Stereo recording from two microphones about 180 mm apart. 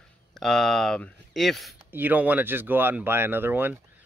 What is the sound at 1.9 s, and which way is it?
Speech, 10° right (ahead or behind).